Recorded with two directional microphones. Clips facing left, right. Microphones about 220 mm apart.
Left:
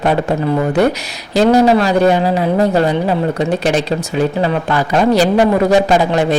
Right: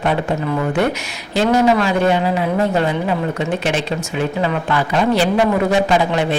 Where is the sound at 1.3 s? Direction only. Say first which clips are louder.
Left 4 dB; 35° left (ahead or behind).